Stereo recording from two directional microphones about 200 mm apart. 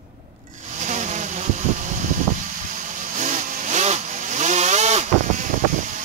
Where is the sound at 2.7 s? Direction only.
40° right (ahead or behind).